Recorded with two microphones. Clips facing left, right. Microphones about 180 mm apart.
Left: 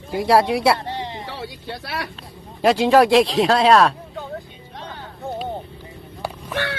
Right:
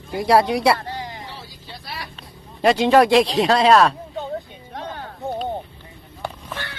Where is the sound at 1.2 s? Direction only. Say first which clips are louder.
Left 7 dB; 75° left (ahead or behind).